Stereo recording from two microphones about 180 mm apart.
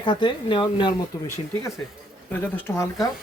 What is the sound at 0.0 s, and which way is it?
Speech, 25° left (ahead or behind).